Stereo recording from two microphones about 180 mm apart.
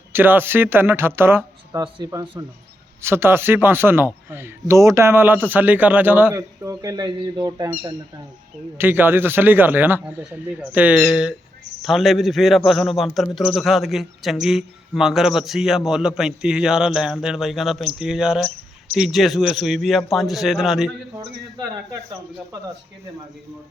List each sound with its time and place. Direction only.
0.1 s a man's voice: 10° right (ahead or behind)